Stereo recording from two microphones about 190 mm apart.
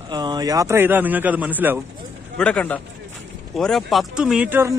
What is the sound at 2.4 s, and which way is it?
Speech, 5° left (ahead or behind).